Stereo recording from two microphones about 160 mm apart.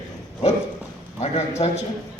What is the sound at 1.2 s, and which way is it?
Speech, 40° left (ahead or behind).